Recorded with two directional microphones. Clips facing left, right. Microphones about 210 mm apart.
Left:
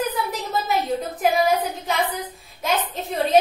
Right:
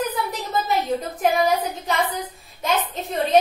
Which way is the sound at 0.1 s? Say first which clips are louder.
Even; centre (ahead or behind).